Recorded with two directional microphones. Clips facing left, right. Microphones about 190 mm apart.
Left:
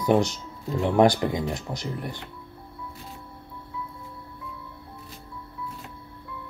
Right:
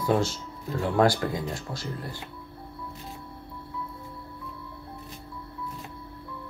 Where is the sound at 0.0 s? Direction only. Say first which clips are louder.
Left 3 dB; 20° left (ahead or behind).